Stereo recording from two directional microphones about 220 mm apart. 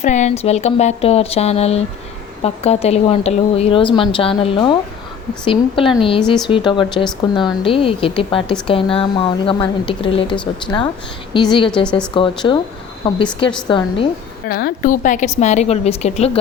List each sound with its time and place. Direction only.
0.0 s a woman's voice: 30° left (ahead or behind)
14.4 s a woman's voice: 40° left (ahead or behind)